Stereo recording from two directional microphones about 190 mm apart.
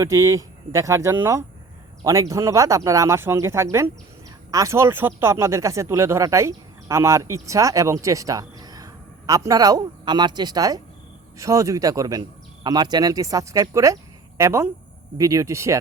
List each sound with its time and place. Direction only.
0.0 s speech: 15° right (ahead or behind)